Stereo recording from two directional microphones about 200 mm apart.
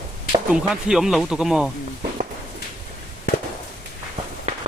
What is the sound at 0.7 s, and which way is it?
Speech, 5° right (ahead or behind).